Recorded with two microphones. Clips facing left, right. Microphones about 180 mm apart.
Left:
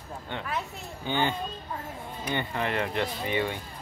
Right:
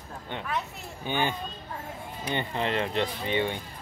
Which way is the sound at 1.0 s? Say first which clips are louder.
Left 1 dB; 15° right (ahead or behind).